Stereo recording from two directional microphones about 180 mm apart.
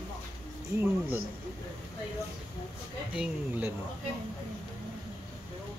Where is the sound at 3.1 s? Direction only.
10° right (ahead or behind).